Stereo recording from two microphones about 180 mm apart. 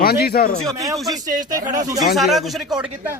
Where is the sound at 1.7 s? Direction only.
20° right (ahead or behind).